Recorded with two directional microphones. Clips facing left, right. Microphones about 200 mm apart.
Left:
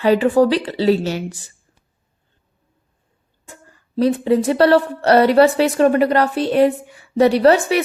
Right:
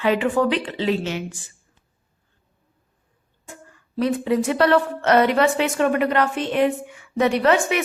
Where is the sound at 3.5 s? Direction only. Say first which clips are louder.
Right 1 dB; 35° left (ahead or behind).